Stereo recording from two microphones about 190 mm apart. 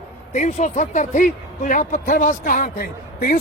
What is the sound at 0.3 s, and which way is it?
A man's voice, 40° left (ahead or behind).